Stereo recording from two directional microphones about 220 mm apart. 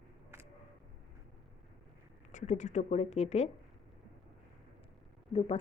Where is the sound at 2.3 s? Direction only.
35° left (ahead or behind).